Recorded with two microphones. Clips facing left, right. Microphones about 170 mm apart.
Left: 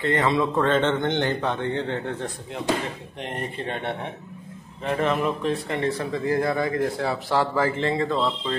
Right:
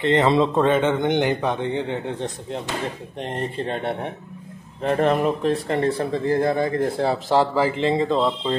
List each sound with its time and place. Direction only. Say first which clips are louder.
0.0 s speech: right 4 dB; 20° right (ahead or behind)
0.7 s a man's voice: right 3 dB; 10° right (ahead or behind)
3.2 s speech: right 4 dB; 30° right (ahead or behind)
7.5 s speech: right 3 dB; 15° right (ahead or behind)